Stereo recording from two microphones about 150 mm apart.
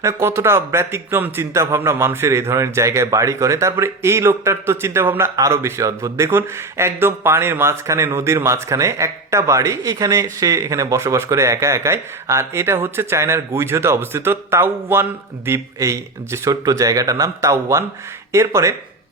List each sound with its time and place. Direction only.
0.0 s a man's voice: 20° right (ahead or behind)